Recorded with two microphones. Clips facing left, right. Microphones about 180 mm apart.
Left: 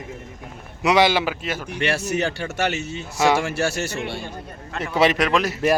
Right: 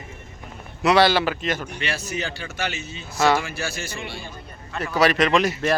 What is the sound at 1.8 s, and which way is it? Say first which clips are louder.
Speech: left 8 dB; 70° left (ahead or behind).